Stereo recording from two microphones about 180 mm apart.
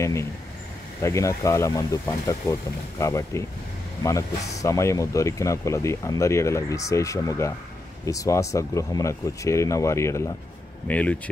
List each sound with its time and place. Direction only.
0.0 s speech: 15° left (ahead or behind)